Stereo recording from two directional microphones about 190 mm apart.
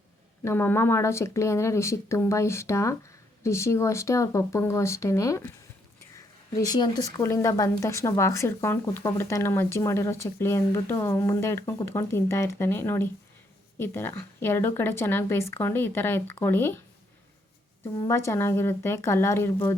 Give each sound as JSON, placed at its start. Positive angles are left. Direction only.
{"t": 0.4, "sound": "speech", "side_deg": 10}
{"t": 18.0, "sound": "speech", "side_deg": 15}